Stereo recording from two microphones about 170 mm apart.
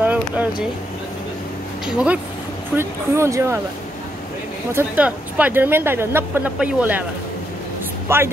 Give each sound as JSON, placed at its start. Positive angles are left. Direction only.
{"t": 0.0, "sound": "vehicle", "side_deg": -10}
{"t": 1.9, "sound": "speech", "side_deg": -5}
{"t": 4.7, "sound": "speech", "side_deg": -10}
{"t": 8.1, "sound": "speech", "side_deg": -15}